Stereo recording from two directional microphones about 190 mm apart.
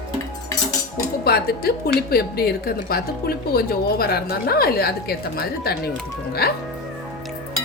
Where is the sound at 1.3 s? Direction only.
55° left (ahead or behind).